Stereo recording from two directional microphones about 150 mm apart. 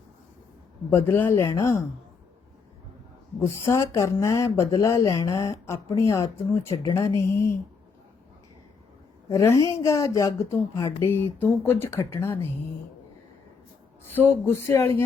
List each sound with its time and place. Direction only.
0.9 s speech: 15° left (ahead or behind)
3.4 s speech: 20° left (ahead or behind)
9.3 s speech: 20° left (ahead or behind)
14.1 s speech: 15° left (ahead or behind)